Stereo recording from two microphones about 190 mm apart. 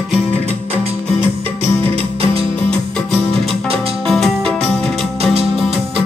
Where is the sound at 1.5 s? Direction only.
10° left (ahead or behind).